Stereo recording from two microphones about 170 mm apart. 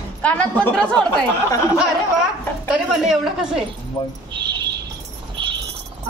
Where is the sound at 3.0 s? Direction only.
Centre (ahead or behind).